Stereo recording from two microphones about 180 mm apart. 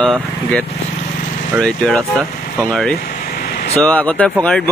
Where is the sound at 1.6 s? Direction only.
5° left (ahead or behind).